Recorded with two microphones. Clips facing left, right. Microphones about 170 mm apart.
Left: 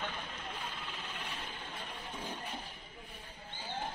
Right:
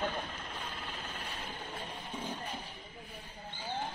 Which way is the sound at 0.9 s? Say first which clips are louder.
Right 1 dB; 35° right (ahead or behind).